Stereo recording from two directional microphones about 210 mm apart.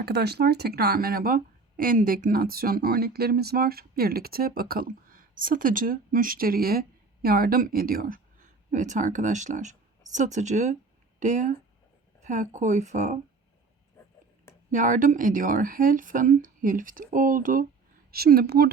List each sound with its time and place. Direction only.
0.0 s speech: 50° right (ahead or behind); by 13.1 s 35° right (ahead or behind)
14.7 s speech: 40° right (ahead or behind)